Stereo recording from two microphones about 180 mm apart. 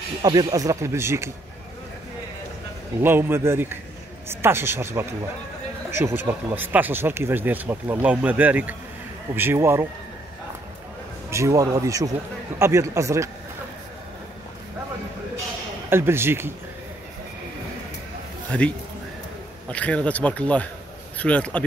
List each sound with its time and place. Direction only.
0.2 s speech: 20° right (ahead or behind)
3.0 s speech: 10° right (ahead or behind)
11.2 s speech: 15° right (ahead or behind)
15.9 s speech: 15° right (ahead or behind)
18.5 s speech: 5° left (ahead or behind)
19.7 s speech: 5° left (ahead or behind)